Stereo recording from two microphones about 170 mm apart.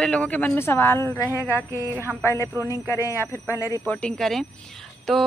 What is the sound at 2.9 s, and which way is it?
Speech, 15° left (ahead or behind).